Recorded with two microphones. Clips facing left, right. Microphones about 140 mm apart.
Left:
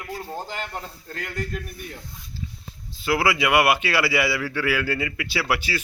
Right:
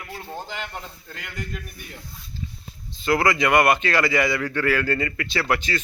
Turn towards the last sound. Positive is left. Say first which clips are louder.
# right 1 dB
turn(degrees=5)  # may be behind; listen again after turning